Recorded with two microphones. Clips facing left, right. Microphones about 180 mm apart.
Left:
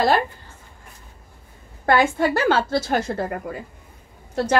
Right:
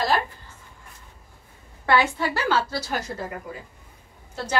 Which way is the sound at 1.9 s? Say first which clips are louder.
Left 4 dB; 50° left (ahead or behind).